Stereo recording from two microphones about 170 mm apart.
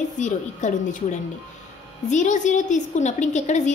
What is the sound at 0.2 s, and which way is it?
A woman's voice, 45° left (ahead or behind).